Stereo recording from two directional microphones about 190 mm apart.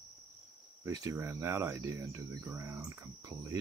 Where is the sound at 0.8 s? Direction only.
15° right (ahead or behind).